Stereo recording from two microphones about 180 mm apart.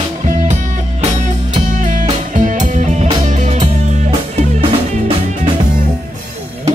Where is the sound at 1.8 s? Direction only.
45° right (ahead or behind).